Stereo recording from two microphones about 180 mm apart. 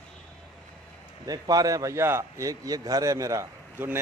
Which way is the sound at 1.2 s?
20° right (ahead or behind).